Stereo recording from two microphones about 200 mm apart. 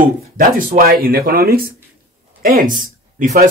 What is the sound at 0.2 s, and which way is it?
Speech, 45° right (ahead or behind).